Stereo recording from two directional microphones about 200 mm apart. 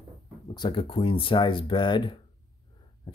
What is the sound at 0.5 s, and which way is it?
Speech, 25° left (ahead or behind).